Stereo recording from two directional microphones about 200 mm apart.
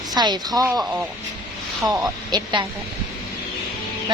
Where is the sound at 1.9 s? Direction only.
20° right (ahead or behind).